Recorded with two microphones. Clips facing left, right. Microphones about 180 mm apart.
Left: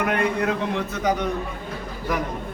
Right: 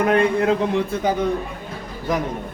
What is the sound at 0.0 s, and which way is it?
Speech, 30° right (ahead or behind).